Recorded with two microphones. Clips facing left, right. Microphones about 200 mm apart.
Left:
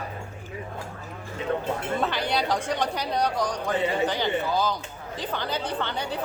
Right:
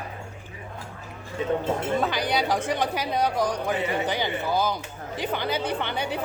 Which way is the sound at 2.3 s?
5° right (ahead or behind).